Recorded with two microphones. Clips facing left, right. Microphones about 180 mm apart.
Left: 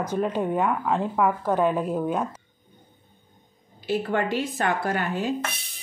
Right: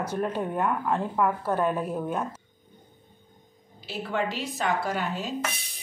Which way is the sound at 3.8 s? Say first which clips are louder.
Left 5 dB; 55° left (ahead or behind).